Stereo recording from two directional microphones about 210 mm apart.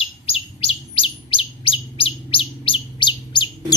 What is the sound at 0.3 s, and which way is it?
Chirp, 30° left (ahead or behind).